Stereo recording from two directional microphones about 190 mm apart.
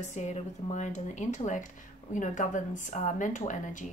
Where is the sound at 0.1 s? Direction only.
40° left (ahead or behind).